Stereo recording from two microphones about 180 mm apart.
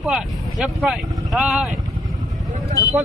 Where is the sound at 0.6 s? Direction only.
Centre (ahead or behind).